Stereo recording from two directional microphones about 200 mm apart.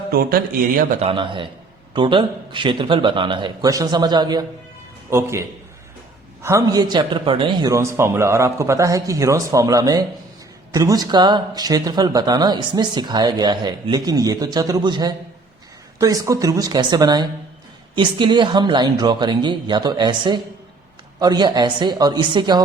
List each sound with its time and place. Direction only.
0.1 s speech: 50° right (ahead or behind)
0.9 s speech: 25° right (ahead or behind)